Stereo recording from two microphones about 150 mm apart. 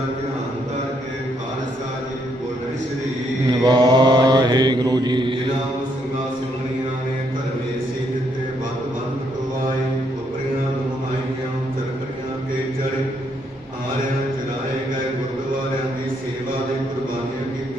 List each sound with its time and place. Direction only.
3.6 s mantra: 25° right (ahead or behind)